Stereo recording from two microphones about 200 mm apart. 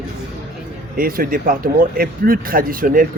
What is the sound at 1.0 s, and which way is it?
Speech, 45° right (ahead or behind).